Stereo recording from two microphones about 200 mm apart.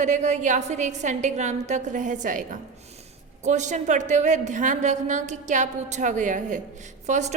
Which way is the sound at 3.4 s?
35° right (ahead or behind).